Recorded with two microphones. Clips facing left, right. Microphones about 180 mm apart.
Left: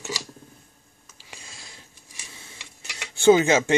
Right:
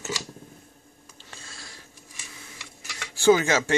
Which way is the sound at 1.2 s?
15° left (ahead or behind).